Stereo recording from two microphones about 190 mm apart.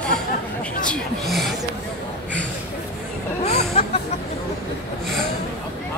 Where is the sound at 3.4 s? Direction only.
35° left (ahead or behind).